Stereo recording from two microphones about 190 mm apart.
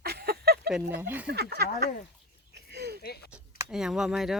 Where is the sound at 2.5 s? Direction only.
60° right (ahead or behind).